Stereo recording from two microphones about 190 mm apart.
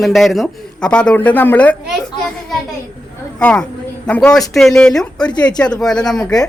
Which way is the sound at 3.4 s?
5° left (ahead or behind).